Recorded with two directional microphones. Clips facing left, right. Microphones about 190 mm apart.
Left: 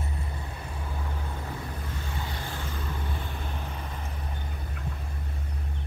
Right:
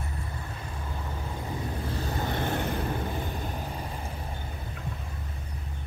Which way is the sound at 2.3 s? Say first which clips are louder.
Right 8 dB; 60° right (ahead or behind).